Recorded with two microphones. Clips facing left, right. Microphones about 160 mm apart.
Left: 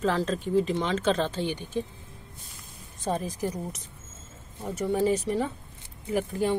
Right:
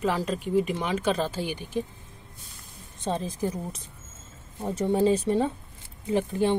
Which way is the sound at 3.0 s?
25° right (ahead or behind).